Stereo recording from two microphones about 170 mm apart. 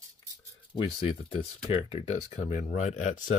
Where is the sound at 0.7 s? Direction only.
30° left (ahead or behind).